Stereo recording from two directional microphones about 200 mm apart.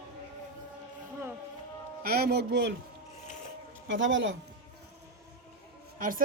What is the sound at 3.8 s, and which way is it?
Speech, 70° right (ahead or behind).